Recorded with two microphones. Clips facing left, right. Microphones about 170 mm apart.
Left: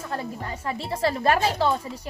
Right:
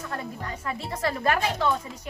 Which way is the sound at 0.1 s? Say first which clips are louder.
Left 4 dB; 30° left (ahead or behind).